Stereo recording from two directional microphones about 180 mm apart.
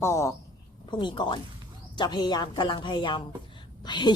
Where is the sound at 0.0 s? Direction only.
15° left (ahead or behind).